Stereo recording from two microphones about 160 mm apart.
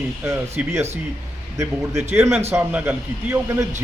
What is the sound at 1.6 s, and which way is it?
A man's voice, 15° right (ahead or behind).